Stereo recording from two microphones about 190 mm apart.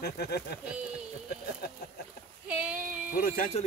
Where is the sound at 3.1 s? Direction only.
50° left (ahead or behind).